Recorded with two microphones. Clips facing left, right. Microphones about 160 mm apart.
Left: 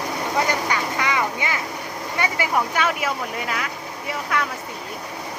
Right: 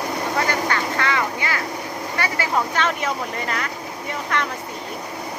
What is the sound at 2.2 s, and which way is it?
Vehicle, 15° left (ahead or behind).